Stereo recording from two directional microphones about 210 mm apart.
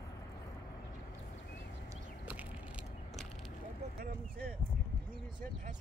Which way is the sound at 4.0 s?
45° right (ahead or behind).